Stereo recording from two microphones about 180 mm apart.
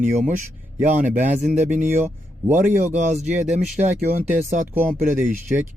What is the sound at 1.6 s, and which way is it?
Speech, 45° right (ahead or behind).